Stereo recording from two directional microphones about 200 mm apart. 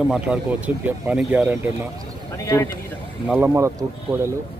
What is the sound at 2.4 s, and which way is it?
Speech, 15° left (ahead or behind).